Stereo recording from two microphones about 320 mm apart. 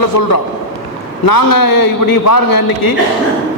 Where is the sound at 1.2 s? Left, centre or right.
Left.